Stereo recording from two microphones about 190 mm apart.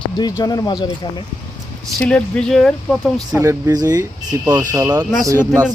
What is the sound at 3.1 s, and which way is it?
Speech, 15° right (ahead or behind).